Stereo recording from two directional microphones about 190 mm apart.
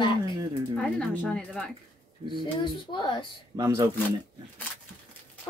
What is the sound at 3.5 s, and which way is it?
Speech, 15° right (ahead or behind).